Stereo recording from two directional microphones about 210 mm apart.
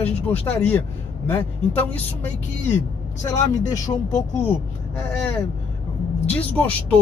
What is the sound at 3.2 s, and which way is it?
Speech, 15° left (ahead or behind).